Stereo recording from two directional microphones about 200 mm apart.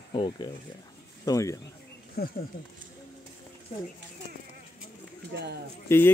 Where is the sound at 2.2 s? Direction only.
50° left (ahead or behind).